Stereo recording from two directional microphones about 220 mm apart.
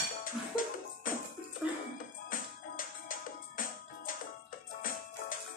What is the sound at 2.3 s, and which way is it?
Music, 40° left (ahead or behind).